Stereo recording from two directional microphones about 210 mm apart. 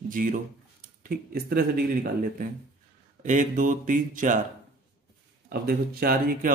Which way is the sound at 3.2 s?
35° right (ahead or behind).